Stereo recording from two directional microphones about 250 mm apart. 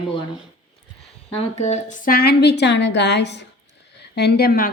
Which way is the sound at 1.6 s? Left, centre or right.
Left.